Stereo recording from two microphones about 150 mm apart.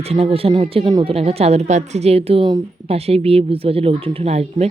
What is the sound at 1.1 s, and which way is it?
Speech, 45° right (ahead or behind).